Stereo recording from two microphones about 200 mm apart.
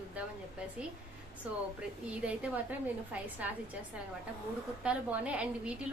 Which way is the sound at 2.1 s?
5° right (ahead or behind).